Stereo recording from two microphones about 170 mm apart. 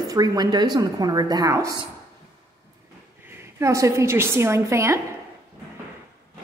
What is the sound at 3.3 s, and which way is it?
A woman's voice, 15° right (ahead or behind).